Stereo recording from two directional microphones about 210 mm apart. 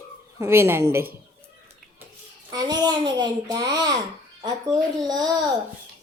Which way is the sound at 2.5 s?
20° right (ahead or behind).